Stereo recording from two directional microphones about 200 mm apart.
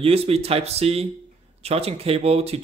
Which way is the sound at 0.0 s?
30° right (ahead or behind).